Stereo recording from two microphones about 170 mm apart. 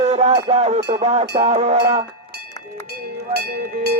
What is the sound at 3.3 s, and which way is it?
Speech, 70° right (ahead or behind).